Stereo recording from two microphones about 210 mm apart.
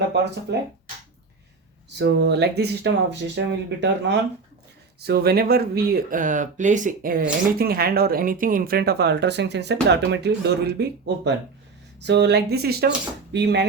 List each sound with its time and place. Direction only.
0.5 s speech: 55° right (ahead or behind)
2.0 s speech: 55° right (ahead or behind)